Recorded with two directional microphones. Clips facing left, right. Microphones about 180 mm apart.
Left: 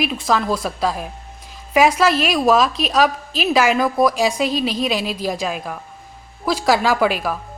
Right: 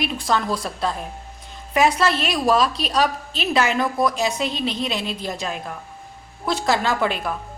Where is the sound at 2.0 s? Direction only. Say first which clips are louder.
Left 4 dB; 25° right (ahead or behind).